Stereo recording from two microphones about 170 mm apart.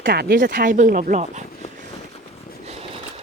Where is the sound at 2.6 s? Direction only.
35° right (ahead or behind).